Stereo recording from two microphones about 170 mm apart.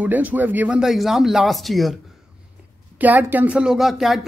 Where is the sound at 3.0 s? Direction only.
10° right (ahead or behind).